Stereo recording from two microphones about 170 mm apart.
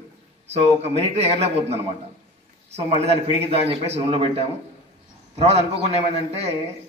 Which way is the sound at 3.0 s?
35° right (ahead or behind).